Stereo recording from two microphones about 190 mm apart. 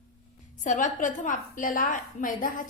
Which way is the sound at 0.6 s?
40° left (ahead or behind).